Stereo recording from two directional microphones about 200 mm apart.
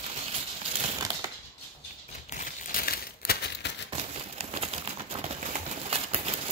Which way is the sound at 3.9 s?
30° right (ahead or behind).